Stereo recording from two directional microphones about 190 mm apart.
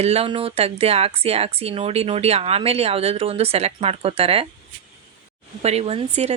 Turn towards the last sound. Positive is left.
turn(degrees=-35)  # may be behind; listen again after turning